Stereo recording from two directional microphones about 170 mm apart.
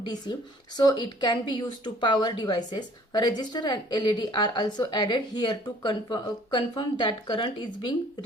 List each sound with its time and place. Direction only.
0.0 s speech: 25° left (ahead or behind)